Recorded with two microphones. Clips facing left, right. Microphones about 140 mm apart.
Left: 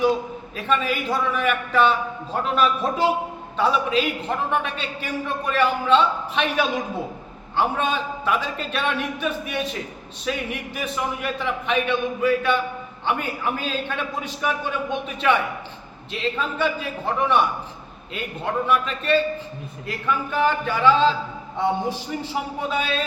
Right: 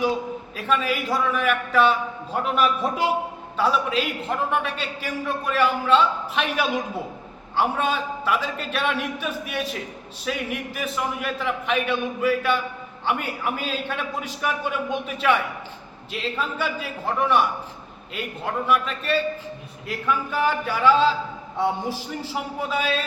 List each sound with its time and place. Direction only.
0.5 s a man's voice: 5° right (ahead or behind)
10.2 s a man's voice: centre (ahead or behind)
18.7 s a man's voice: 5° right (ahead or behind)